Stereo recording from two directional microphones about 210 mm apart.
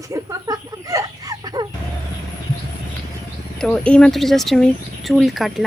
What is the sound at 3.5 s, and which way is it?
Speech, 5° left (ahead or behind).